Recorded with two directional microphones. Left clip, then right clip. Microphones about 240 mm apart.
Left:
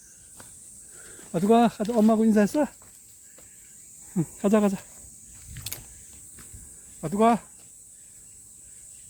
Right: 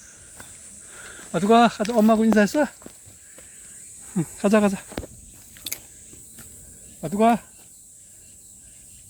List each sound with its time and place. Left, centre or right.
1.1 s speech: centre
4.1 s speech: centre
5.6 s mechanisms: centre
7.0 s speech: centre